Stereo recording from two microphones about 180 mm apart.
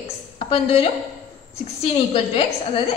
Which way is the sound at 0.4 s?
35° left (ahead or behind).